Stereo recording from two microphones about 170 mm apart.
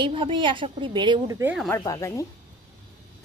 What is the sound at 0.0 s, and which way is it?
A woman's voice, 30° right (ahead or behind).